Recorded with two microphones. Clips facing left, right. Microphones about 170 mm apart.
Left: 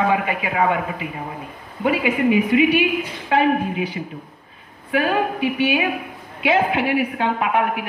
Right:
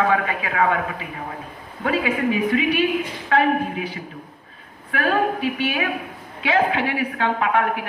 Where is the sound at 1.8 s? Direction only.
15° left (ahead or behind).